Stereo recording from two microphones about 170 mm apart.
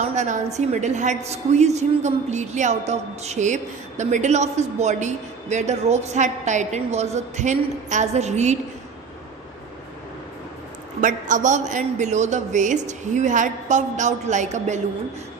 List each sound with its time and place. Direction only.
0.0 s a woman's voice: 45° right (ahead or behind)
11.0 s a woman's voice: 50° right (ahead or behind)